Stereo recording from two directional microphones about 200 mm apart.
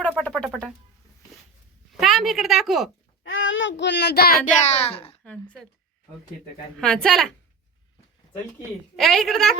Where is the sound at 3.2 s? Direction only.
70° left (ahead or behind); by 4.4 s 50° left (ahead or behind).